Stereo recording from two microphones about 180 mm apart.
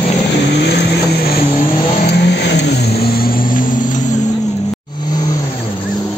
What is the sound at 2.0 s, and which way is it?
Vehicle, 65° left (ahead or behind).